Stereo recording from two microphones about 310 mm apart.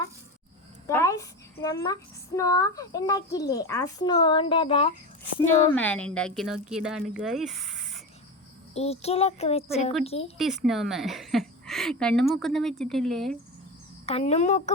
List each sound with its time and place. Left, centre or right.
0.9 s a child's voice: centre
5.7 s a woman's voice: centre
8.7 s speech: centre
10.3 s a woman's voice: centre
14.1 s speech: centre